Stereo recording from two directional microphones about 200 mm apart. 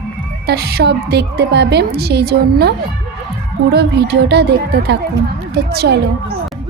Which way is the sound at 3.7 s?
55° right (ahead or behind).